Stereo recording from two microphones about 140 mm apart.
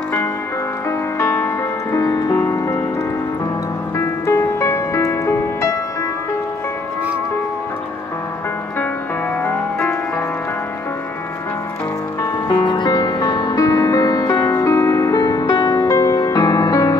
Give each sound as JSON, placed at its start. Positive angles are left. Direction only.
{"t": 0.8, "sound": "music", "side_deg": 20}
{"t": 3.9, "sound": "music", "side_deg": 20}
{"t": 9.4, "sound": "music", "side_deg": 15}
{"t": 12.4, "sound": "music", "side_deg": 30}